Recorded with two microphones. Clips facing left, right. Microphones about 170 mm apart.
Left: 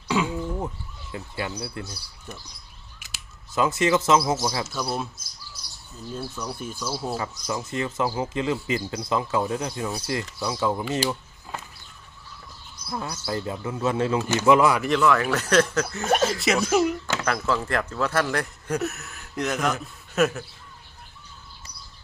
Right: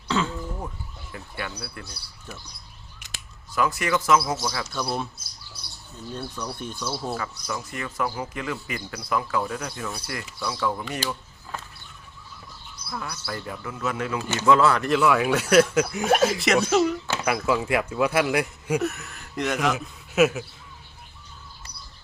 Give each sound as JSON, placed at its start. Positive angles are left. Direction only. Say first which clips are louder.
{"t": 0.1, "sound": "a sound", "louder": "left 1 dB", "side_deg": 10}
{"t": 1.1, "sound": "speech", "louder": "left 4 dB", "side_deg": 20}
{"t": 3.0, "sound": "a sound", "louder": "right 3 dB", "side_deg": 0}
{"t": 3.5, "sound": "speech", "louder": "left 3 dB", "side_deg": 25}
{"t": 4.6, "sound": "speech", "louder": "even", "side_deg": 5}
{"t": 6.1, "sound": "speech", "louder": "left 1 dB", "side_deg": 5}
{"t": 7.2, "sound": "speech", "louder": "left 2 dB", "side_deg": 25}
{"t": 12.9, "sound": "speech", "louder": "left 4 dB", "side_deg": 25}
{"t": 14.3, "sound": "speech", "louder": "even", "side_deg": 15}
{"t": 14.8, "sound": "speech", "louder": "even", "side_deg": -5}
{"t": 17.2, "sound": "speech", "louder": "right 3 dB", "side_deg": -10}
{"t": 18.8, "sound": "speech", "louder": "right 2 dB", "side_deg": 5}